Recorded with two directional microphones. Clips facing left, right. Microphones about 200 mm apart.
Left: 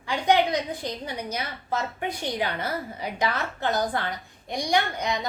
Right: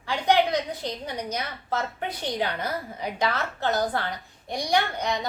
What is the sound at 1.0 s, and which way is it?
A woman's voice, 10° left (ahead or behind).